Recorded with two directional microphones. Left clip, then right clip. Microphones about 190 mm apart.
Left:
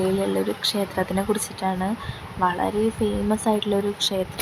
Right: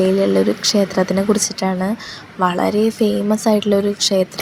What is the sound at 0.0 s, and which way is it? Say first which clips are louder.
Speech: right 8 dB; 15° right (ahead or behind).